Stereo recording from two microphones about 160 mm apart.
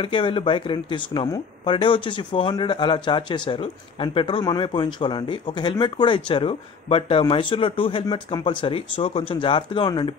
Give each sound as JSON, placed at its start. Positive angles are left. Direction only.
{"t": 0.0, "sound": "speech", "side_deg": 30}